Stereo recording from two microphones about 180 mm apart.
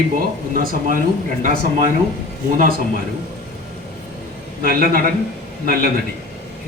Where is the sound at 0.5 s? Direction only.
50° right (ahead or behind).